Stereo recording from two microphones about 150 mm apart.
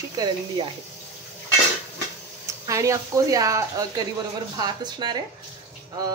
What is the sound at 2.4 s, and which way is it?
Speech, 20° right (ahead or behind).